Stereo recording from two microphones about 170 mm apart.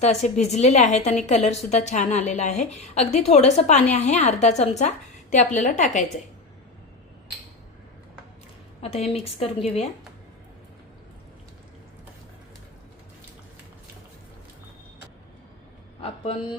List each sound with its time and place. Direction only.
0.0 s a woman's voice: 40° left (ahead or behind)
8.8 s a woman's voice: 35° left (ahead or behind)
16.0 s a sound: 35° left (ahead or behind)